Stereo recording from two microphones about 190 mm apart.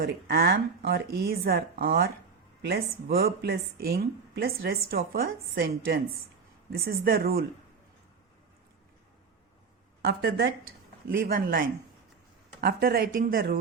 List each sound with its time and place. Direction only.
0.0 s a woman's voice: 55° right (ahead or behind)
10.1 s a woman's voice: 60° right (ahead or behind)